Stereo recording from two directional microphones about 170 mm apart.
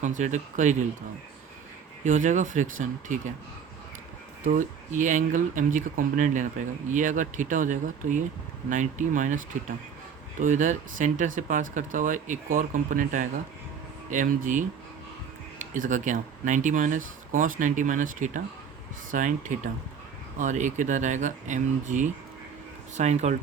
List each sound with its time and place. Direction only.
0.0 s speech: 45° right (ahead or behind)
2.0 s speech: 50° right (ahead or behind)
4.4 s speech: 50° right (ahead or behind)